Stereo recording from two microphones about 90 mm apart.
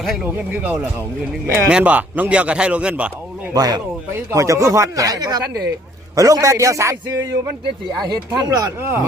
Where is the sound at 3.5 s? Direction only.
45° right (ahead or behind).